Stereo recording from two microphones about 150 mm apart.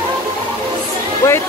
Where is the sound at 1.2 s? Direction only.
15° left (ahead or behind).